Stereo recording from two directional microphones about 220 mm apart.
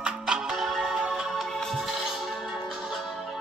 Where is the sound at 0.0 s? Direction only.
5° right (ahead or behind).